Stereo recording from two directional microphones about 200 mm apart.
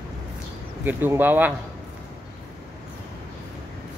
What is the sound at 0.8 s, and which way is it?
Speech, 10° right (ahead or behind).